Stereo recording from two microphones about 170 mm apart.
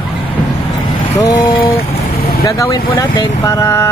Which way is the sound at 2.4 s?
20° left (ahead or behind).